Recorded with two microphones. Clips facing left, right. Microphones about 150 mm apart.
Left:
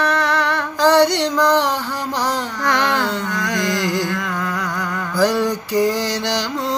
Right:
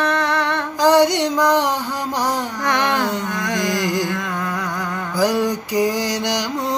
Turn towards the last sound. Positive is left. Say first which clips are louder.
# even
turn(degrees=-15)  # may be behind; listen again after turning